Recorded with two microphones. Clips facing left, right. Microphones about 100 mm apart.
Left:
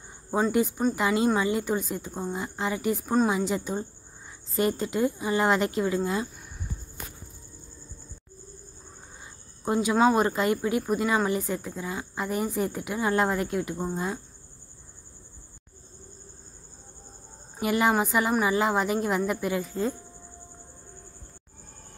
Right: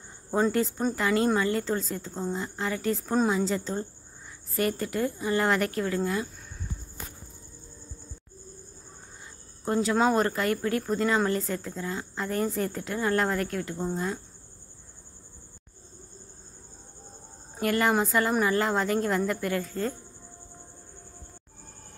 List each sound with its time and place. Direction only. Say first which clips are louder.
0.5 s speech: left 2 dB; 15° left (ahead or behind)
9.7 s speech: left 2 dB; 15° left (ahead or behind)
17.6 s speech: left 1 dB; 15° left (ahead or behind)